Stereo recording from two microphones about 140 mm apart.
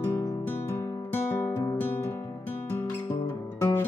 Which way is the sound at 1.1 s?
15° left (ahead or behind).